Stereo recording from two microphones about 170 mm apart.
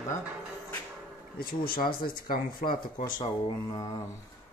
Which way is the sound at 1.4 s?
60° left (ahead or behind).